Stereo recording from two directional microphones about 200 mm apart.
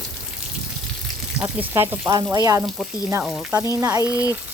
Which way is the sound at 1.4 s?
10° right (ahead or behind).